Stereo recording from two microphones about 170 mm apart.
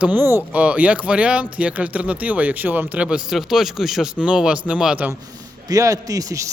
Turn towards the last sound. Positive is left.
turn(degrees=-20)  # may be behind; listen again after turning